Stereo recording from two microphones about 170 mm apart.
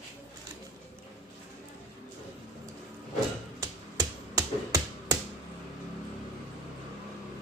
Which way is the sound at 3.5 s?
20° right (ahead or behind).